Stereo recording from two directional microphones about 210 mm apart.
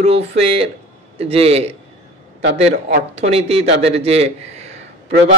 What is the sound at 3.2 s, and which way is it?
A man's voice, 30° right (ahead or behind).